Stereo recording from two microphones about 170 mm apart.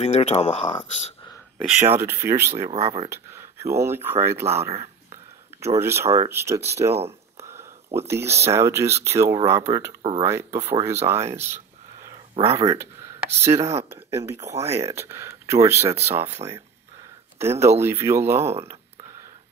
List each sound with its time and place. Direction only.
0.0 s speech: 40° left (ahead or behind)
1.9 s speech: 15° right (ahead or behind)
2.7 s speech: 40° right (ahead or behind)
3.1 s speech: 15° right (ahead or behind)
4.6 s a sound: 15° right (ahead or behind)
6.1 s speech: 15° right (ahead or behind)
7.1 s a sound: 15° right (ahead or behind)
8.1 s speech: 15° right (ahead or behind)
11.4 s a sound: 15° right (ahead or behind)
12.6 s speech: 15° right (ahead or behind)
17.4 s speech: 15° right (ahead or behind)